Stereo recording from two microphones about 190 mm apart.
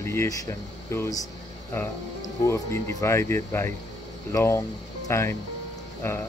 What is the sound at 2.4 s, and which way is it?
Speech, 15° left (ahead or behind).